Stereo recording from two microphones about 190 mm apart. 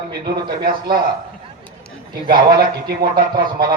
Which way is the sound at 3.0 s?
50° right (ahead or behind).